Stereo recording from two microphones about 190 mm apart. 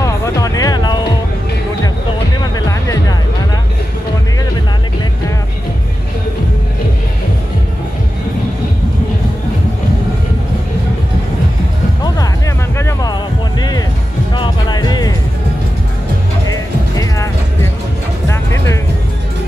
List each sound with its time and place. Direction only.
0.0 s music: 15° left (ahead or behind)
2.4 s music: 20° left (ahead or behind)
12.7 s music: 15° left (ahead or behind)
16.4 s music: 20° left (ahead or behind)